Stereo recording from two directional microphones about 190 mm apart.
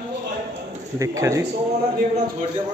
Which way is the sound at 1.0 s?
15° right (ahead or behind).